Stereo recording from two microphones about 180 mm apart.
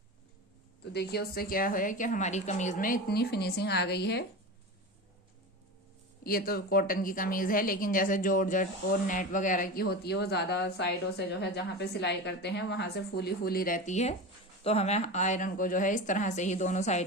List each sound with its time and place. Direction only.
0.9 s a woman's voice: 60° left (ahead or behind)
6.2 s a woman's voice: 55° left (ahead or behind); by 17.1 s 40° left (ahead or behind)